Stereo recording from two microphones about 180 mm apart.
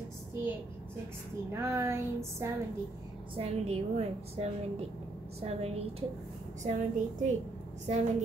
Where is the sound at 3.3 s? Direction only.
35° right (ahead or behind).